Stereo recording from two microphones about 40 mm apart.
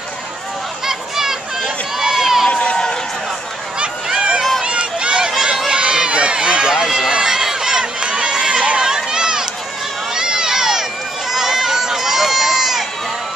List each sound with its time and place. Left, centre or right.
0.8 s a sound: centre
2.0 s run: centre
2.5 s run: left
3.8 s a sound: right
4.6 s run: right; by 7.1 s centre
7.2 s crowd: centre
8.1 s run: right; by 12.8 s centre